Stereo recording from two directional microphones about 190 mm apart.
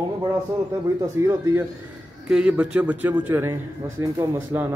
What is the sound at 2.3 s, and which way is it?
A man's voice, 5° right (ahead or behind).